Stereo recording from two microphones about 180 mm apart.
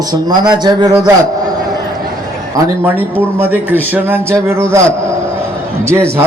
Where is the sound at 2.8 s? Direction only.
10° right (ahead or behind).